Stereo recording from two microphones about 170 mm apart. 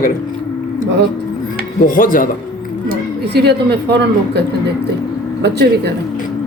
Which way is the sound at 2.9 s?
75° right (ahead or behind).